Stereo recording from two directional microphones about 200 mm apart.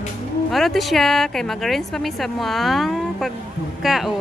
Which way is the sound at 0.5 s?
Centre (ahead or behind).